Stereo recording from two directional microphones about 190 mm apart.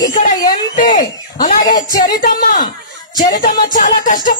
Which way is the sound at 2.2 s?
50° left (ahead or behind).